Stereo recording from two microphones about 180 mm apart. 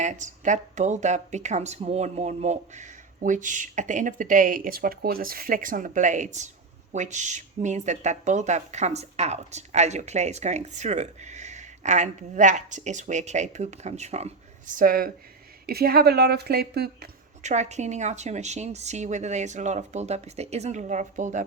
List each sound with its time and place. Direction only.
0.0 s speech: 40° right (ahead or behind); by 17.1 s 65° right (ahead or behind)
17.4 s speech: 40° right (ahead or behind)